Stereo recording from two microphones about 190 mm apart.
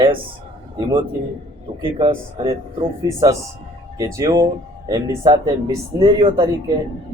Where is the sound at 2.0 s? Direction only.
30° right (ahead or behind).